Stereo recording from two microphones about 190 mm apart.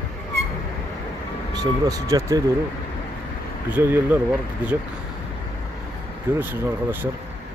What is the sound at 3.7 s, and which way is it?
Speech, 10° right (ahead or behind).